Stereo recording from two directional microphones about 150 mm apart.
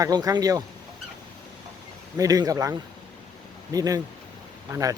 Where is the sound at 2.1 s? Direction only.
25° right (ahead or behind).